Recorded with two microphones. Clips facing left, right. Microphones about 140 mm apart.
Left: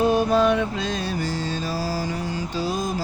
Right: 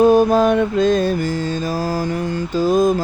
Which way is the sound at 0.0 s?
45° right (ahead or behind).